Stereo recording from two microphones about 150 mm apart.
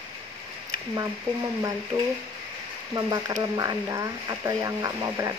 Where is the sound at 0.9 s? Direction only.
20° right (ahead or behind).